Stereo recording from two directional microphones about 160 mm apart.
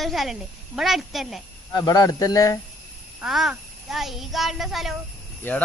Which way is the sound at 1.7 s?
25° left (ahead or behind).